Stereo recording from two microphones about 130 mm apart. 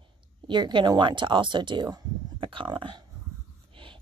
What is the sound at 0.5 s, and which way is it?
A woman's voice, 35° right (ahead or behind).